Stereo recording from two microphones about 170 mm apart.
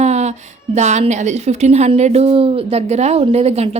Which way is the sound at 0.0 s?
40° right (ahead or behind).